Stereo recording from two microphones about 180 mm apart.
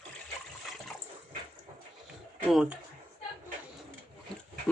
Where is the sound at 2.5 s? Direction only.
Centre (ahead or behind).